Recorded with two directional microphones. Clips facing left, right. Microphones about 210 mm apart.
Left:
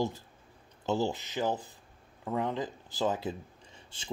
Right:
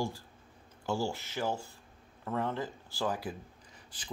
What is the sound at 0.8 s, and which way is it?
Speech, 20° left (ahead or behind).